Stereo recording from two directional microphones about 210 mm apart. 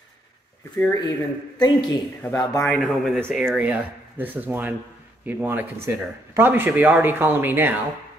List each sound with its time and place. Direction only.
0.7 s speech: 10° left (ahead or behind)
2.6 s speech: centre (ahead or behind)